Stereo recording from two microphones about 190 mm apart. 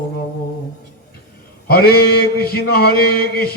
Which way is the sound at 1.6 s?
55° left (ahead or behind).